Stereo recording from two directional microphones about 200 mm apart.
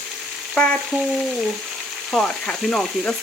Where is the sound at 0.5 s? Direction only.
5° left (ahead or behind).